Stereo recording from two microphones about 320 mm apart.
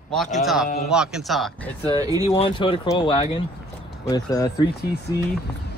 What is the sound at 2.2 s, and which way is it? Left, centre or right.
Speech, centre.